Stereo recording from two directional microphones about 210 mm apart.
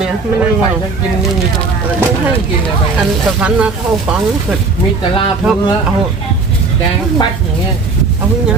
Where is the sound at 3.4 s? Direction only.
5° right (ahead or behind).